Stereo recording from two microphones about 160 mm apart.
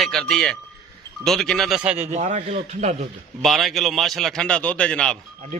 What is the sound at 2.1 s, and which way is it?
Speech, 45° right (ahead or behind).